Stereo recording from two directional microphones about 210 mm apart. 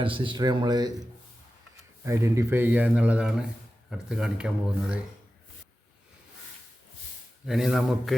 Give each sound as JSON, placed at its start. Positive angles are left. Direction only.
{"t": 0.0, "sound": "speech", "side_deg": -25}
{"t": 2.0, "sound": "speech", "side_deg": -15}
{"t": 7.4, "sound": "speech", "side_deg": 0}